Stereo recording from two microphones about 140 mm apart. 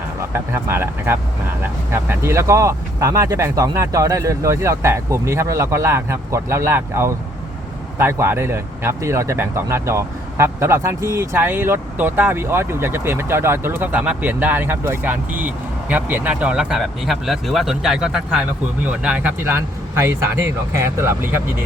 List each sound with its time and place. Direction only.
0.2 s speech: 15° right (ahead or behind)